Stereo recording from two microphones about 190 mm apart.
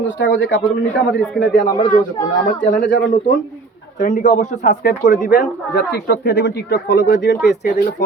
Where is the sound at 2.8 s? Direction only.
70° left (ahead or behind).